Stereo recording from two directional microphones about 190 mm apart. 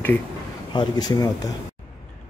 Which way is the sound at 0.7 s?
20° left (ahead or behind).